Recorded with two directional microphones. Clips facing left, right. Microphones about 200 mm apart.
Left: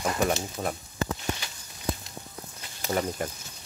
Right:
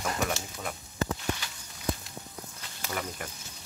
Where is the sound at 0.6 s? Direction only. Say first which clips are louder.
Left 7 dB; 35° left (ahead or behind).